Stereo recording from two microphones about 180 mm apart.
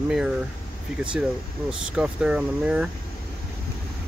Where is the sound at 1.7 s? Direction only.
5° right (ahead or behind).